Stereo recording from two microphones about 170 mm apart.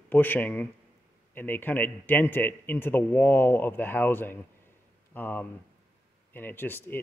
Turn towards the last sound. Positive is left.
turn(degrees=10)  # may be behind; listen again after turning